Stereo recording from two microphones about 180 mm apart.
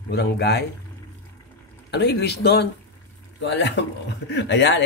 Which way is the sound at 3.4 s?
80° left.